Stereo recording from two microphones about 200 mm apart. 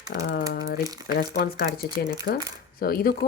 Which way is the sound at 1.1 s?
45° left (ahead or behind).